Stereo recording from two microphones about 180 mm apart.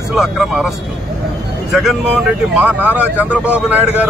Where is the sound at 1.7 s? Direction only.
Centre (ahead or behind).